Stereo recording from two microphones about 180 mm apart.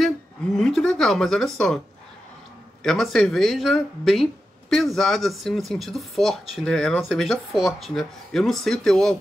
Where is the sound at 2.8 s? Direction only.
Centre (ahead or behind).